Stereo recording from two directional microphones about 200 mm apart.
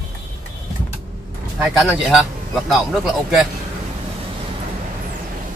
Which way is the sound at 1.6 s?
Centre (ahead or behind).